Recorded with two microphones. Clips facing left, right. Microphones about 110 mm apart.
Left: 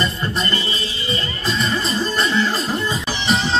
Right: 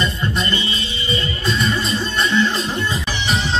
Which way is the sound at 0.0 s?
35° left (ahead or behind).